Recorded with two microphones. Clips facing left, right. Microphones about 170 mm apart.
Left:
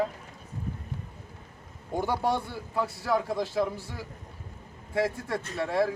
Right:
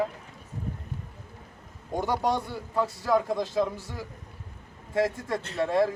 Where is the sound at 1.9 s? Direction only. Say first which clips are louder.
Right 1 dB; 15° right (ahead or behind).